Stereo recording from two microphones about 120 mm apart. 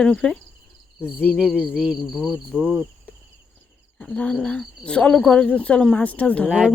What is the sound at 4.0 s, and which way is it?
Speech, 10° left (ahead or behind).